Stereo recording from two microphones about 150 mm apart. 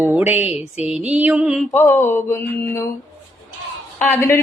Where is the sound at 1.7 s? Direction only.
15° left (ahead or behind).